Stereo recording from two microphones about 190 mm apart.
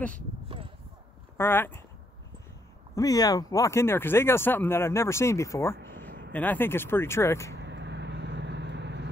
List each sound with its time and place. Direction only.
1.4 s speech: 10° left (ahead or behind)
3.0 s speech: 20° left (ahead or behind)
6.0 s a sound: 50° right (ahead or behind)
6.3 s speech: 10° left (ahead or behind)
7.5 s vehicle: 65° right (ahead or behind)